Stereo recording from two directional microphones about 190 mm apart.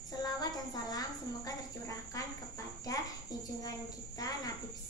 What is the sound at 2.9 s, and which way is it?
Speech, 20° left (ahead or behind).